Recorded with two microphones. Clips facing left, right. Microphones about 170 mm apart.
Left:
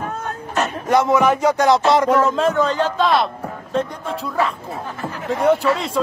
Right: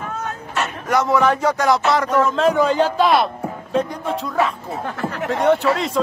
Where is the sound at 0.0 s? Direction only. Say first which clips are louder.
Left 1 dB; 40° left (ahead or behind).